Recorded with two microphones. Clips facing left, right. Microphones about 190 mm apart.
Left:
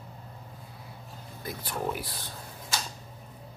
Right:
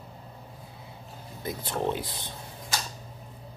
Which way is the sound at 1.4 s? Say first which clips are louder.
Right 4 dB; 25° right (ahead or behind).